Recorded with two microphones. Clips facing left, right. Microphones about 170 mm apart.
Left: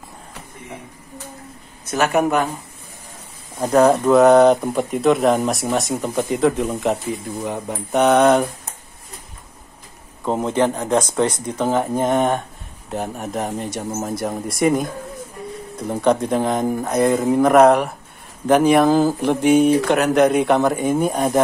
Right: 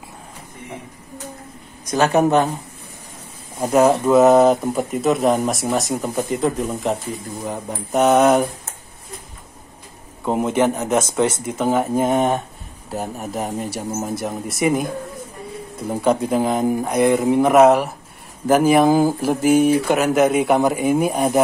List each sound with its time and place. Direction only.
1.9 s speech: 20° right (ahead or behind)
3.5 s speech: 5° right (ahead or behind)
10.2 s speech: 10° right (ahead or behind)
17.0 s speech: 20° right (ahead or behind)
17.4 s speech: 5° right (ahead or behind)